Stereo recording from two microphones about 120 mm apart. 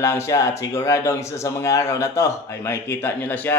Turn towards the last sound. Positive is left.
turn(degrees=15)  # may be behind; listen again after turning